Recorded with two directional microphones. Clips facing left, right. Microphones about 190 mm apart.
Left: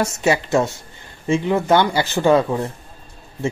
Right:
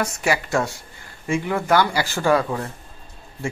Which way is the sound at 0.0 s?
25° left (ahead or behind).